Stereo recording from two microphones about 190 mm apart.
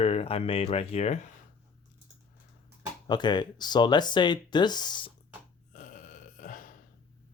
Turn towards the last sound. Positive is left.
turn(degrees=45)  # may be behind; listen again after turning